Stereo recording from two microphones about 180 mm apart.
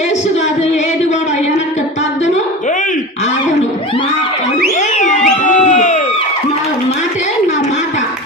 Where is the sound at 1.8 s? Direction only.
40° left (ahead or behind).